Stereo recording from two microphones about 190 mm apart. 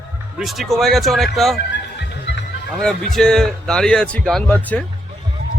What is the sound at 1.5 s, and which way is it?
Music, 65° left (ahead or behind).